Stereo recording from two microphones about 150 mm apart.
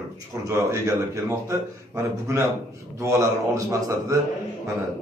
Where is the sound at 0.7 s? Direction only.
20° right (ahead or behind).